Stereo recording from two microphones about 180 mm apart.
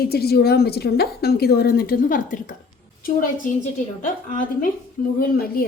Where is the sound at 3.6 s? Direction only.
45° left (ahead or behind).